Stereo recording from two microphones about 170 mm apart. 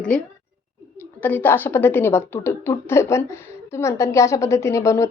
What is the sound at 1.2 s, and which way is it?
Speech, 10° left (ahead or behind).